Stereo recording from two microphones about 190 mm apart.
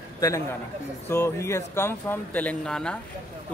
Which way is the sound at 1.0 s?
15° left (ahead or behind).